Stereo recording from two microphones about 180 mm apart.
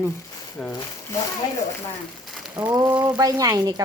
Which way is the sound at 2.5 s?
20° right (ahead or behind).